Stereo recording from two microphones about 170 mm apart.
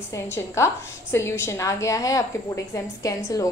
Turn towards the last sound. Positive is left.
turn(degrees=20)  # may be behind; listen again after turning